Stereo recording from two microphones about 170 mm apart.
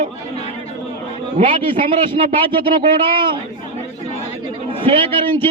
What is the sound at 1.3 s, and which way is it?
A man's voice, 35° right (ahead or behind).